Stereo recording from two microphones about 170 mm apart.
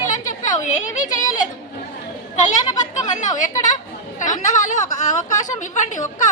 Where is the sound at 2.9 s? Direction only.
45° left (ahead or behind).